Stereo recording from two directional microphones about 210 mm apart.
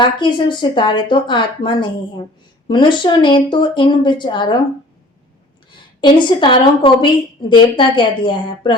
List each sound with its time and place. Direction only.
0.0 s a woman's voice: 20° left (ahead or behind)
6.0 s a woman's voice: 20° left (ahead or behind)